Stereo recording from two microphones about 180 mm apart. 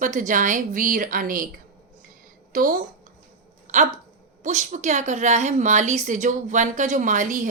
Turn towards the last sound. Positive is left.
turn(degrees=-45)  # may be behind; listen again after turning